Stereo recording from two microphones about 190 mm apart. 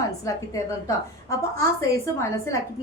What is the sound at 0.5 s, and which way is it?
A woman's voice, 15° left (ahead or behind).